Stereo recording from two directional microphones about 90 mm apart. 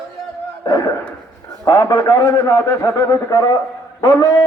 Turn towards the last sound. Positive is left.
turn(degrees=30)  # may be behind; listen again after turning